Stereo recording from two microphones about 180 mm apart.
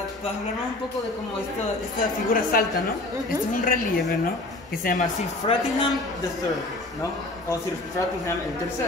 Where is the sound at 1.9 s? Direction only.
55° left (ahead or behind).